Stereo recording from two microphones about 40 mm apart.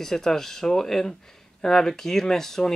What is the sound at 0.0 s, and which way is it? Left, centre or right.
Speech, centre.